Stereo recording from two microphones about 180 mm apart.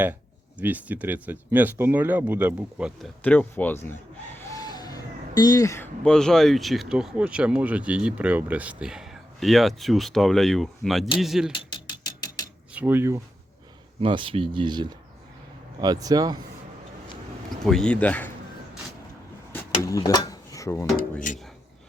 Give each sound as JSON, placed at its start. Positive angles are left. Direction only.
{"t": 0.6, "sound": "speech", "side_deg": -10}
{"t": 3.2, "sound": "chicken", "side_deg": 10}
{"t": 6.1, "sound": "speech", "side_deg": 5}
{"t": 11.7, "sound": "music", "side_deg": 25}
{"t": 12.7, "sound": "speech", "side_deg": -10}
{"t": 14.0, "sound": "speech", "side_deg": -30}
{"t": 17.7, "sound": "speech", "side_deg": 5}
{"t": 19.8, "sound": "speech", "side_deg": 20}